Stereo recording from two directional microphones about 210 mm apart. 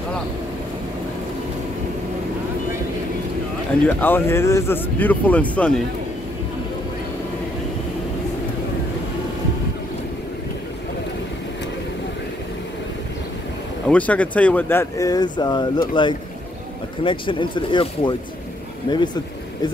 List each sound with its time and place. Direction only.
3.8 s speech: 10° left (ahead or behind)
13.8 s speech: 5° left (ahead or behind); by 18.1 s 25° left (ahead or behind)